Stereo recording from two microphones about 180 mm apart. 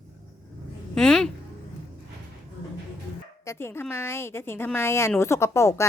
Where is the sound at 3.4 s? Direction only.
15° left (ahead or behind).